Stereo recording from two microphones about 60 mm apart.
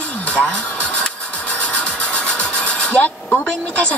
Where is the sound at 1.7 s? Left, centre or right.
Centre.